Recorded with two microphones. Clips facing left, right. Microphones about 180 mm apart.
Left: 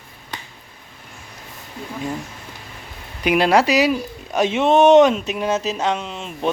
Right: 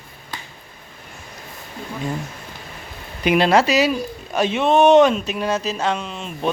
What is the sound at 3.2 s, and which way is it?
Speech, 10° left (ahead or behind).